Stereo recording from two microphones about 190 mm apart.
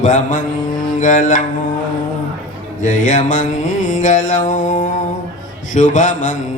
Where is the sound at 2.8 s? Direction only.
40° left (ahead or behind).